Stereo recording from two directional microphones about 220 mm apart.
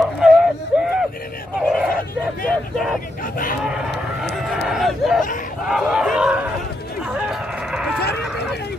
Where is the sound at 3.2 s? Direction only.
40° left (ahead or behind).